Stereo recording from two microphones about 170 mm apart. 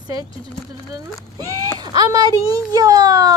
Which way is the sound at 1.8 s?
25° right (ahead or behind).